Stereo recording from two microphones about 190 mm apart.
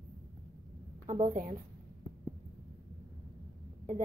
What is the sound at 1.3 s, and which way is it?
Speech, 45° right (ahead or behind).